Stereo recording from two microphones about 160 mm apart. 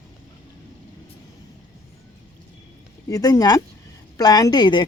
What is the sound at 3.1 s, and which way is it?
Speech, 20° left (ahead or behind).